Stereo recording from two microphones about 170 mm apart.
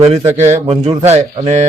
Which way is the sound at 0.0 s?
40° right (ahead or behind).